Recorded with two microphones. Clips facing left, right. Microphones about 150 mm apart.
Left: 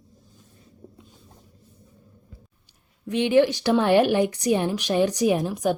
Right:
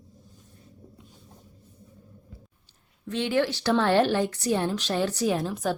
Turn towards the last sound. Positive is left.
turn(degrees=15)  # may be behind; listen again after turning